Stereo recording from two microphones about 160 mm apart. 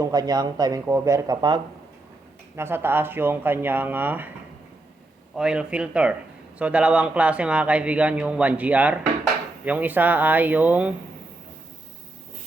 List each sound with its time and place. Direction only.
0.0 s speech: 25° right (ahead or behind)
2.6 s speech: 15° right (ahead or behind)
5.4 s speech: 5° right (ahead or behind)